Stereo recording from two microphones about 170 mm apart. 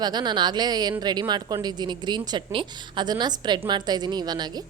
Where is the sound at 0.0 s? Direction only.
25° right (ahead or behind).